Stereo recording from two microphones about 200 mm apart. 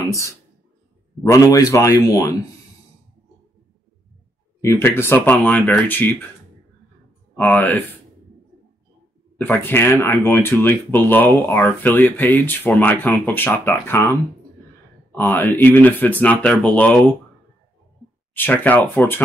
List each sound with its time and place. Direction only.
1.2 s speech: 15° left (ahead or behind)
4.6 s speech: 10° left (ahead or behind)
7.3 s speech: 10° left (ahead or behind)
9.5 s speech: 10° left (ahead or behind)
15.1 s speech: 10° left (ahead or behind)
18.3 s speech: 10° left (ahead or behind)